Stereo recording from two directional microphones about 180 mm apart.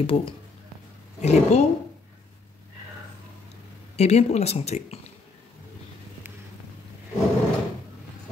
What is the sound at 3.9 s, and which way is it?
Speech, 35° left (ahead or behind).